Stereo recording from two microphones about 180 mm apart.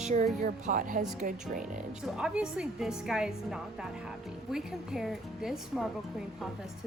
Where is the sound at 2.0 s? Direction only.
5° right (ahead or behind).